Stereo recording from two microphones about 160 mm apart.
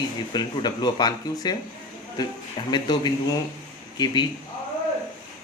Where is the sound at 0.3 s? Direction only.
25° left (ahead or behind).